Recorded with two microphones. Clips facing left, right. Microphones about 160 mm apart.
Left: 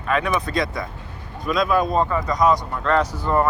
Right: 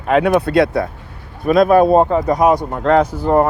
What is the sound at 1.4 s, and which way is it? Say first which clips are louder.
Speech: right 9 dB; 55° right (ahead or behind).